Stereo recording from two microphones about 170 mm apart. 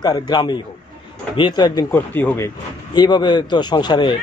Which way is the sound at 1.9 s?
10° left (ahead or behind).